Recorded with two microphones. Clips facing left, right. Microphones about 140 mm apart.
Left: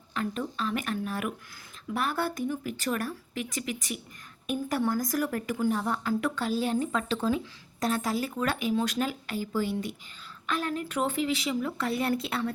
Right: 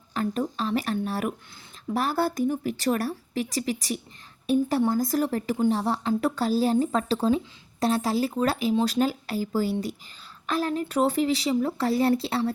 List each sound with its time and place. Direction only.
0.1 s speech: 35° right (ahead or behind)
4.8 s speech: 25° right (ahead or behind)